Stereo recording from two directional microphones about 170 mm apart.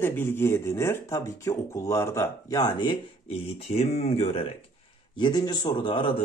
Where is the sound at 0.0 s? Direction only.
15° left (ahead or behind).